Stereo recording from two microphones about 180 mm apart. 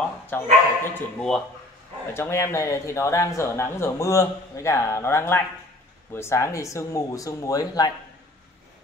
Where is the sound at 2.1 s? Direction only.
15° left (ahead or behind).